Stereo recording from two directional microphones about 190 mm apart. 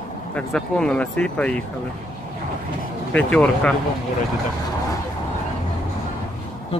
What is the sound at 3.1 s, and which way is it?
Speech, 5° left (ahead or behind).